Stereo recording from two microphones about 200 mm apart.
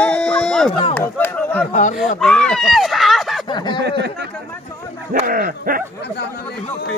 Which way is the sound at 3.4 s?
20° left (ahead or behind).